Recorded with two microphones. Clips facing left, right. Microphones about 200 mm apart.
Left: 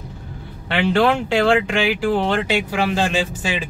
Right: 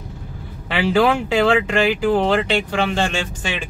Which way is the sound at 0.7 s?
Centre (ahead or behind).